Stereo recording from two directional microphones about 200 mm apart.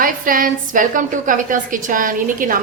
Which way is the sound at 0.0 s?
45° right (ahead or behind).